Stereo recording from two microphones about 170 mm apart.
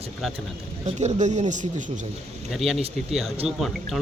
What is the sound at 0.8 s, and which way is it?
Speech, 40° right (ahead or behind).